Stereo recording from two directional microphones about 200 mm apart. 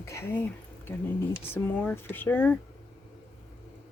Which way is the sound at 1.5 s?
10° left (ahead or behind).